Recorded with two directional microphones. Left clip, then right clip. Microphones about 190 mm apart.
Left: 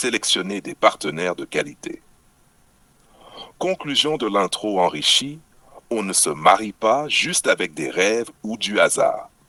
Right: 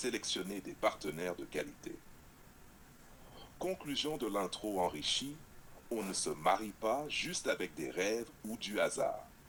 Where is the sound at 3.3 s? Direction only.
45° left (ahead or behind).